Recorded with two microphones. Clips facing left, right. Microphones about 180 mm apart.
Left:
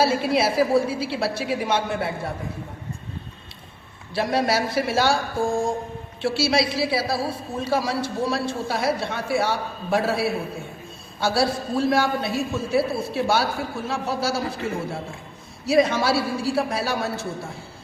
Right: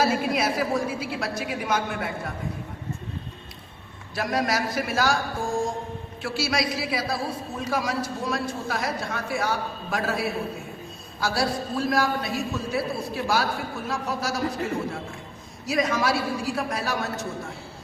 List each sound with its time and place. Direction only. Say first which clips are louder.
0.0 s a man's voice: left 3 dB; 30° left (ahead or behind)
4.1 s a man's voice: left 4 dB; 30° left (ahead or behind)
15.6 s a man's voice: left 5 dB; 30° left (ahead or behind)